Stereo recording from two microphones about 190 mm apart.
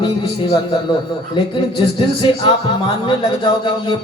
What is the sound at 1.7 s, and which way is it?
A man's voice, 25° left (ahead or behind).